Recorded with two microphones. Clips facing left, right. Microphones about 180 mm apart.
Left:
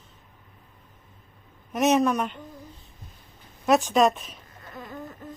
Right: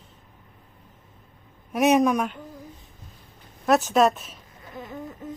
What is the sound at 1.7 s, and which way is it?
Speech, 10° right (ahead or behind).